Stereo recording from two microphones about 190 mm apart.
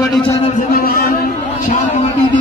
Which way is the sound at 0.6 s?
50° left (ahead or behind).